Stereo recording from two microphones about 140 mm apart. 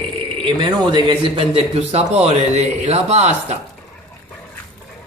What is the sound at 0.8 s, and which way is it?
A man's voice, 35° right (ahead or behind).